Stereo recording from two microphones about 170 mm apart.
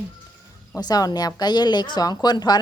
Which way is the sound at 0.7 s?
20° left (ahead or behind).